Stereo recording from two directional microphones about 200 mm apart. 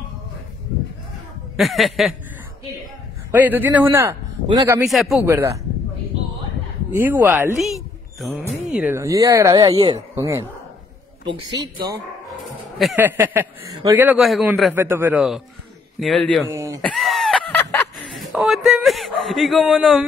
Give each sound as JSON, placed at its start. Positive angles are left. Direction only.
{"t": 1.6, "sound": "chuckle", "side_deg": 0}
{"t": 3.3, "sound": "a man's voice", "side_deg": -10}
{"t": 4.8, "sound": "chuckle", "side_deg": 0}
{"t": 5.2, "sound": "a man's voice", "side_deg": -15}
{"t": 7.0, "sound": "speech", "side_deg": -10}
{"t": 8.7, "sound": "a man's voice", "side_deg": -10}
{"t": 12.9, "sound": "a man's voice", "side_deg": -10}
{"t": 16.0, "sound": "chuckle", "side_deg": 0}
{"t": 16.4, "sound": "a man's voice", "side_deg": -15}
{"t": 16.8, "sound": "a sound", "side_deg": 0}